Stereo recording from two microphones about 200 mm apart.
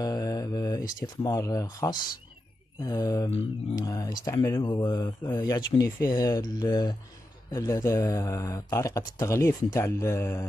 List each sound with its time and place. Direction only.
0.0 s mantra: 20° left (ahead or behind)
1.0 s speech: 15° left (ahead or behind)